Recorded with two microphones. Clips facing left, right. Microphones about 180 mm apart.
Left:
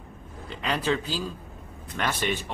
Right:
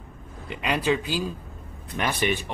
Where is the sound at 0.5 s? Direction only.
15° right (ahead or behind).